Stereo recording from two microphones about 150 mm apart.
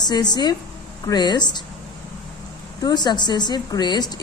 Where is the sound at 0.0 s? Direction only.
25° left (ahead or behind).